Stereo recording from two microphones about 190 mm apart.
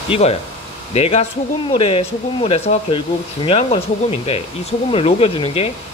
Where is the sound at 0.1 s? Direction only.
30° left (ahead or behind).